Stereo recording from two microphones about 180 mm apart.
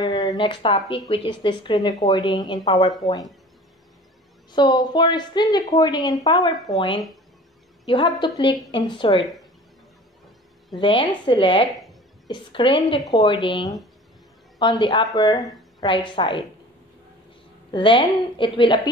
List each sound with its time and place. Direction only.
0.0 s a woman's voice: 20° left (ahead or behind)
4.5 s a woman's voice: 25° left (ahead or behind)
7.8 s a woman's voice: 25° left (ahead or behind)
9.2 s speech: centre (ahead or behind)
10.7 s a woman's voice: 25° left (ahead or behind)
17.6 s a woman's voice: 25° left (ahead or behind)